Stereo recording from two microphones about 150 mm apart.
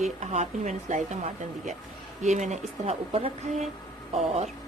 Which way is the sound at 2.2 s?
50° right (ahead or behind).